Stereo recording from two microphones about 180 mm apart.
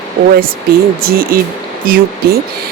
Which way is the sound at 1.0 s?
55° right (ahead or behind).